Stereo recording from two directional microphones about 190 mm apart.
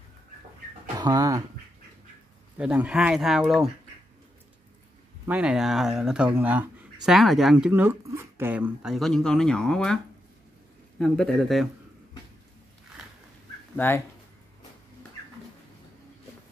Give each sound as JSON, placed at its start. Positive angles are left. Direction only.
{"t": 0.9, "sound": "speech", "side_deg": -20}
{"t": 2.5, "sound": "speech", "side_deg": -10}
{"t": 5.2, "sound": "speech", "side_deg": -5}
{"t": 11.0, "sound": "speech", "side_deg": 5}
{"t": 13.7, "sound": "speech", "side_deg": 10}